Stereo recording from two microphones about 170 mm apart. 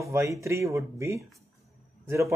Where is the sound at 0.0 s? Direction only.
15° right (ahead or behind).